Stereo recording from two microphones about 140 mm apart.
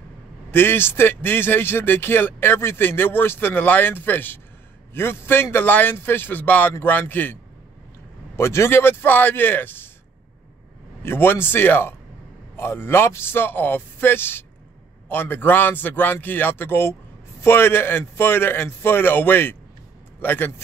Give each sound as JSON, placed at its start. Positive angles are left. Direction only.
{"t": 0.5, "sound": "a man's voice", "side_deg": 15}
{"t": 8.4, "sound": "a man's voice", "side_deg": 20}
{"t": 11.0, "sound": "a man's voice", "side_deg": 15}